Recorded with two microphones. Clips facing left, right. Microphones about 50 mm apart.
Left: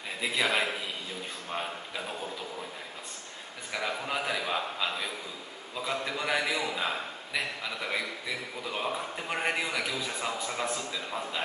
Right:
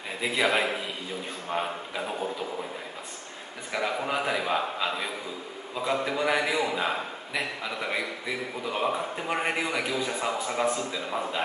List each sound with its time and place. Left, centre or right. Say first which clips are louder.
0.2 s a man's voice: right 3 dB; centre
3.7 s a man's voice: right 4 dB; centre